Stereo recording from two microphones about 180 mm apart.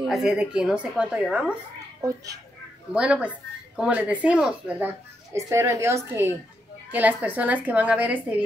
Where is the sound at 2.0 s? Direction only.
20° right (ahead or behind).